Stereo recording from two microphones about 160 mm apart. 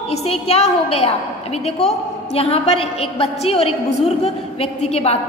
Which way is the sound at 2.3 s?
35° left (ahead or behind).